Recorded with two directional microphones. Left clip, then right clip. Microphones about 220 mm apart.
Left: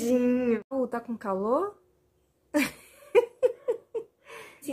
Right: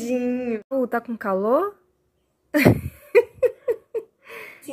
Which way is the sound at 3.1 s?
15° right (ahead or behind).